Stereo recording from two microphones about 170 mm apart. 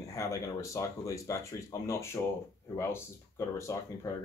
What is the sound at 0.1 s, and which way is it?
Speech, 20° left (ahead or behind).